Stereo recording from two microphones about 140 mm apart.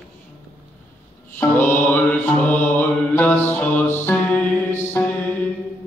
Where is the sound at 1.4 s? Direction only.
15° left (ahead or behind).